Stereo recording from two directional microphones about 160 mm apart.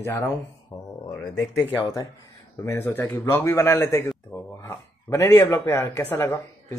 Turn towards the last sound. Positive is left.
turn(degrees=15)  # may be behind; listen again after turning